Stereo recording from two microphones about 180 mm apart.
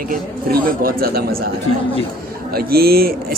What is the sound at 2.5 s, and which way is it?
Speech, 55° right (ahead or behind).